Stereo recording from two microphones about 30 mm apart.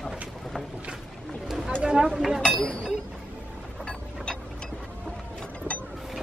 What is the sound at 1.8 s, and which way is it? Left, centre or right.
Speech, right.